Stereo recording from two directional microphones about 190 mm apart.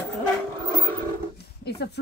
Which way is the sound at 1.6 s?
60° left (ahead or behind).